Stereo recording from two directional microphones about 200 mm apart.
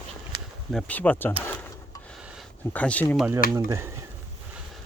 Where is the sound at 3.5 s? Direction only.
15° right (ahead or behind).